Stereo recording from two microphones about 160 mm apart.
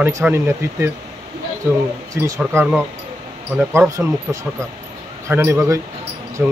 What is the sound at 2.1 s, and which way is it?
Speech, 20° right (ahead or behind).